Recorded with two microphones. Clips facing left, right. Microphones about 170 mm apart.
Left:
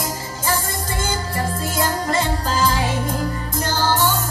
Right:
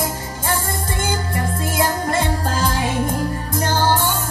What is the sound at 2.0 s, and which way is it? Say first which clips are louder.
Music: right 1 dB; 50° right (ahead or behind).